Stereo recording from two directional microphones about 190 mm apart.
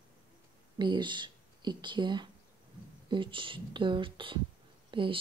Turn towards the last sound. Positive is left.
turn(degrees=-25)  # may be behind; listen again after turning